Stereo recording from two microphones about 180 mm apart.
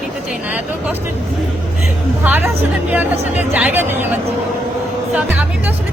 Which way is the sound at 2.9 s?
10° right (ahead or behind).